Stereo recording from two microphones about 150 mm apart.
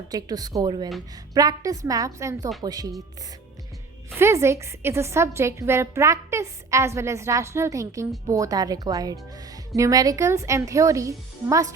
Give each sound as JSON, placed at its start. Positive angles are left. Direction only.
{"t": 0.1, "sound": "a woman's voice", "side_deg": -25}
{"t": 4.1, "sound": "a woman's voice", "side_deg": -20}